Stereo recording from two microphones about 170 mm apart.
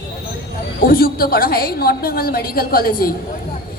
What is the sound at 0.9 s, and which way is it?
A woman's voice, 60° left (ahead or behind).